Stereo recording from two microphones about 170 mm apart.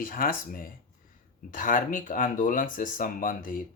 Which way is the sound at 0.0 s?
55° left (ahead or behind).